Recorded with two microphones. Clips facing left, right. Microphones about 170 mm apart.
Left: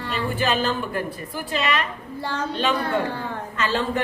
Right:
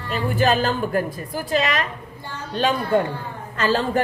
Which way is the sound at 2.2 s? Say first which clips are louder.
Left 10 dB; 85° left.